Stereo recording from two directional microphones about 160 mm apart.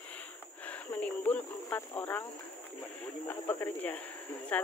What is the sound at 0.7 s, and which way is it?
Cricket, 10° left (ahead or behind).